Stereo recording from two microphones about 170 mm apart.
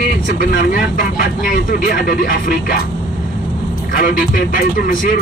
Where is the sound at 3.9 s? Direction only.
55° left (ahead or behind).